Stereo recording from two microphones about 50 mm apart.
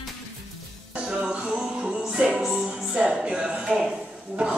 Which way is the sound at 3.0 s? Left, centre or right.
Centre.